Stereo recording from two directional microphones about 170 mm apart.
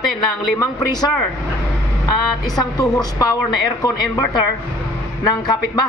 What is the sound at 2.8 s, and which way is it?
A man's voice, 20° left (ahead or behind).